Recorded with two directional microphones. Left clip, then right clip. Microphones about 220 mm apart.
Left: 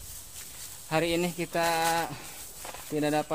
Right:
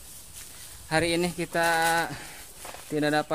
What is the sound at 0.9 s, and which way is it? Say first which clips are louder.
Speech: right 2 dB; 15° right (ahead or behind).